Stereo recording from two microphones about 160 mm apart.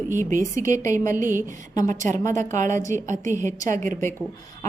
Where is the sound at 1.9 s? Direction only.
50° right (ahead or behind).